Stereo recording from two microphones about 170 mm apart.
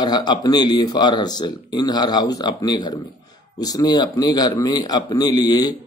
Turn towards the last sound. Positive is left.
turn(degrees=25)  # may be behind; listen again after turning